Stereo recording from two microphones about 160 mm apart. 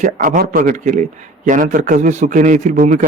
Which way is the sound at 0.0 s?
60° right (ahead or behind).